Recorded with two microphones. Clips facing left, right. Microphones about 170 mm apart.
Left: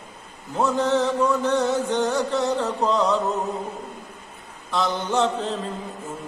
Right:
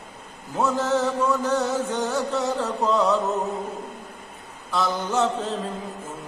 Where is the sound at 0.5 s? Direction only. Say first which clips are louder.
Left 2 dB; centre (ahead or behind).